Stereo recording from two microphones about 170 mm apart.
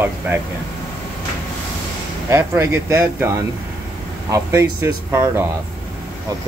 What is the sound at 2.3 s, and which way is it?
Speech, 15° right (ahead or behind).